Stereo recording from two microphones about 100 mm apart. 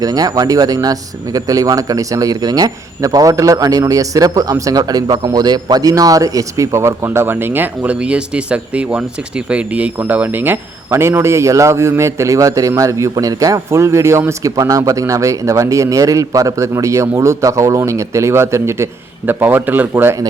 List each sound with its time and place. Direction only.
0.0 s speech: 40° right (ahead or behind); by 20.1 s 20° right (ahead or behind)